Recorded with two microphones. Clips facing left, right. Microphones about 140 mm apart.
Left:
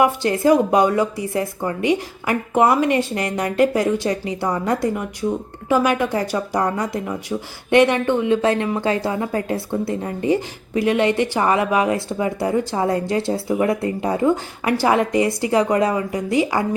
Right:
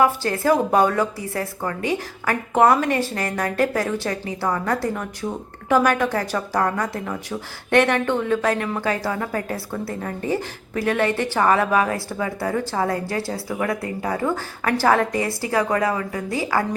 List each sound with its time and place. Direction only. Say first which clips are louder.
0.0 s a woman's voice: left 3 dB; 20° left (ahead or behind)